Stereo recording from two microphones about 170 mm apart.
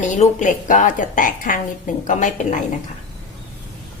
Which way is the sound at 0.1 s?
50° left (ahead or behind).